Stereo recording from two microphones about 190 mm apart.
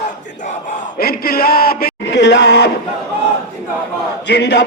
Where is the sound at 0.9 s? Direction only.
55° left (ahead or behind).